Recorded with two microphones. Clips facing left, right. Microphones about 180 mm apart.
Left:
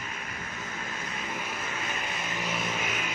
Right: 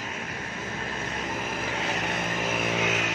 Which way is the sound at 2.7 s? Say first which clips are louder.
Right 6 dB; 80° right.